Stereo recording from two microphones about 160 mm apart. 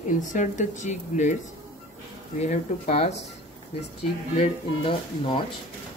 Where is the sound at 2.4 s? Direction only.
45° left (ahead or behind).